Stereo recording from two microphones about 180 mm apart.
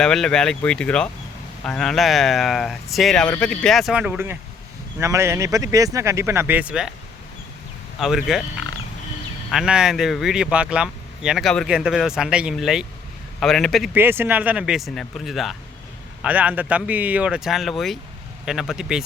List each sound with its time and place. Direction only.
0.0 s speech: 5° left (ahead or behind)
7.9 s speech: centre (ahead or behind)
9.5 s speech: 5° right (ahead or behind)
13.9 s speech: 10° right (ahead or behind)